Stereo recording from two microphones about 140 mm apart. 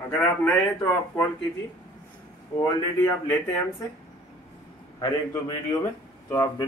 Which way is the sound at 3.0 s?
15° left (ahead or behind).